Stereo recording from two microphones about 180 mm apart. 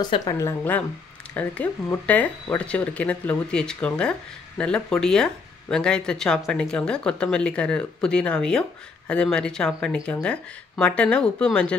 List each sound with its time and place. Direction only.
0.0 s speech: 20° left (ahead or behind); by 11.7 s 5° left (ahead or behind)